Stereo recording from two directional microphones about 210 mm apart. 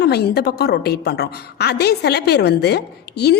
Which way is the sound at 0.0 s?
50° left (ahead or behind).